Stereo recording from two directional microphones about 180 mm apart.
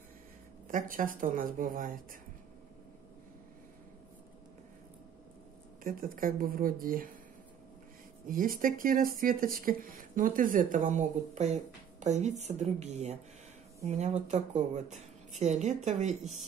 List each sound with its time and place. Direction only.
0.7 s speech: 50° right (ahead or behind)
5.9 s speech: 50° right (ahead or behind)
8.3 s speech: 50° right (ahead or behind)